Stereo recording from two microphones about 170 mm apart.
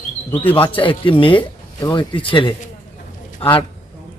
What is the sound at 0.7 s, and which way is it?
A man's voice, 30° left (ahead or behind).